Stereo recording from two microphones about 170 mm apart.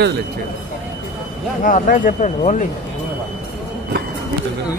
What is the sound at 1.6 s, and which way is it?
Speech, 50° left (ahead or behind).